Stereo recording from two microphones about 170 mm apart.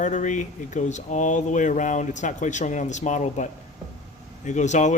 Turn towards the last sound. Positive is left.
turn(degrees=45)  # may be behind; listen again after turning